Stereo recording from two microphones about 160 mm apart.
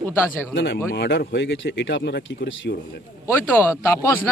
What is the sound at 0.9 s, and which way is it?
A man's voice, 90° left.